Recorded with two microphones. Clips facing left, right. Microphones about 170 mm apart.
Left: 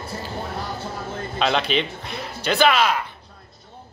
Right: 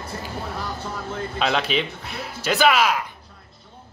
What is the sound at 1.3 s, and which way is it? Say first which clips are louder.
Speech: left 2 dB; centre (ahead or behind).